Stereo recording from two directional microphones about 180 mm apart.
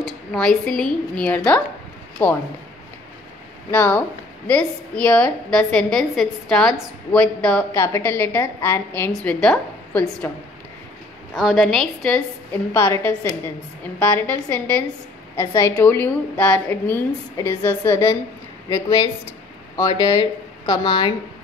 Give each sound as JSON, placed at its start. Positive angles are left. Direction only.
{"t": 0.0, "sound": "a woman's voice", "side_deg": 5}
{"t": 3.7, "sound": "a woman's voice", "side_deg": 10}
{"t": 11.3, "sound": "a woman's voice", "side_deg": 0}
{"t": 12.7, "sound": "a woman's voice", "side_deg": 15}